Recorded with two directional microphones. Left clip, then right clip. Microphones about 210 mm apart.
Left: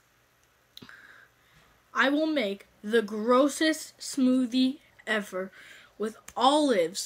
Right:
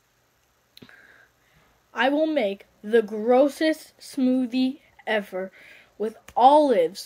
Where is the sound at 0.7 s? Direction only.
15° left (ahead or behind).